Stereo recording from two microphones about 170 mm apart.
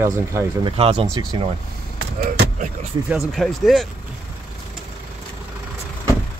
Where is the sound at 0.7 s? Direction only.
35° right (ahead or behind).